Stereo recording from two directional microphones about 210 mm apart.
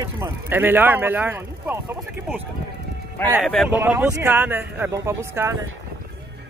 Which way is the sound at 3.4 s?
Centre (ahead or behind).